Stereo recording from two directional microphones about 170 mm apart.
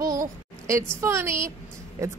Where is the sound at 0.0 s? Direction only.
20° right (ahead or behind).